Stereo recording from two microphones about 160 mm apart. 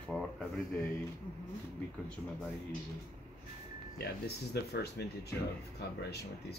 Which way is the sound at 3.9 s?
85° left.